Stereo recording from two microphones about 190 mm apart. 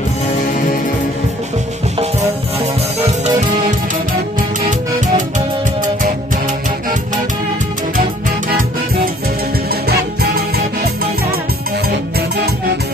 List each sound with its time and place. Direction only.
3.3 s music: 35° right (ahead or behind)
9.8 s music: 55° right (ahead or behind)